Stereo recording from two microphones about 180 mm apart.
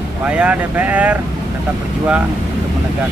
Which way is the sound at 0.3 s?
5° right (ahead or behind).